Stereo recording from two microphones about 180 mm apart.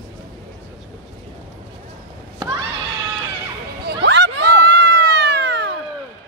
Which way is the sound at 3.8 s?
70° right (ahead or behind).